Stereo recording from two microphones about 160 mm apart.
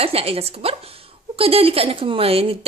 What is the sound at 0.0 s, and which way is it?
Speech, 35° right (ahead or behind).